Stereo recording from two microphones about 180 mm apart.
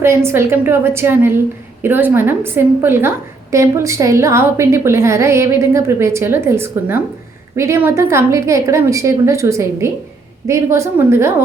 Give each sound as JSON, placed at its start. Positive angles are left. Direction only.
{"t": 0.0, "sound": "a woman's voice", "side_deg": -15}